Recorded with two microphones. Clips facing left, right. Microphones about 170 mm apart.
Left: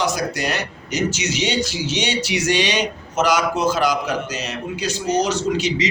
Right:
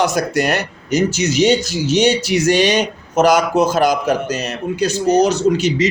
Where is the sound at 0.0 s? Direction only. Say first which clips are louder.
Right 6 dB; 55° right (ahead or behind).